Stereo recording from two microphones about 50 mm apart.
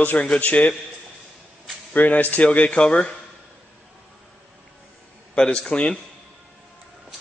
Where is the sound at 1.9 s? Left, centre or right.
Left.